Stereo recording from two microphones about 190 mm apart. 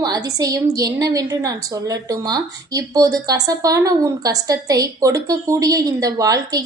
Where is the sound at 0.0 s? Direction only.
20° right (ahead or behind).